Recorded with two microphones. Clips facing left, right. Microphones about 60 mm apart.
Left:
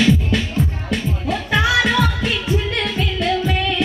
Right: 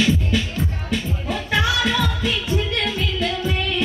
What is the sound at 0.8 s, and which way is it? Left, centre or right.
Music, left.